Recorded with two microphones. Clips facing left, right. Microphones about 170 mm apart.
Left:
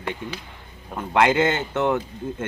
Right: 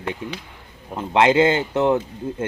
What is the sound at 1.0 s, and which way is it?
Speech, 25° right (ahead or behind).